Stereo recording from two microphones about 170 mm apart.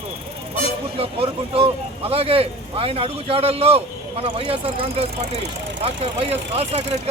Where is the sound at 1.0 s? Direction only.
35° right (ahead or behind).